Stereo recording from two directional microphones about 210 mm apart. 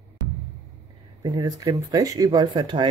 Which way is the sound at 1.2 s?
20° right (ahead or behind).